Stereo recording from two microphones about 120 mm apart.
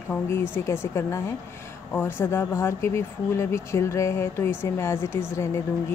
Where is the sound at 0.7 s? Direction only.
20° left (ahead or behind).